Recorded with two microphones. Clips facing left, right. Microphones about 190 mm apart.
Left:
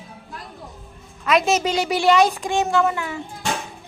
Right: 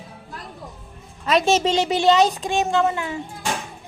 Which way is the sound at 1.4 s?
25° right (ahead or behind).